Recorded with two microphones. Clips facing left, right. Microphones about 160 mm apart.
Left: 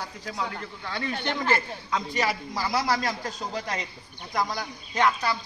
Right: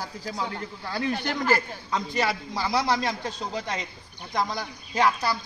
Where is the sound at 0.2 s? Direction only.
30° right (ahead or behind).